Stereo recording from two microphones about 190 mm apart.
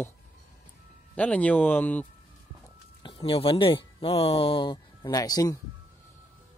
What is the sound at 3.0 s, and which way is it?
Speech, 30° left (ahead or behind).